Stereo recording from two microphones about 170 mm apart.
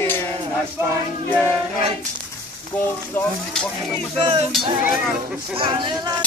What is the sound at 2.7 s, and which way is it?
Speech, 10° left (ahead or behind).